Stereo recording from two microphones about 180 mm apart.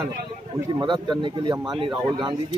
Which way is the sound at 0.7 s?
25° right (ahead or behind).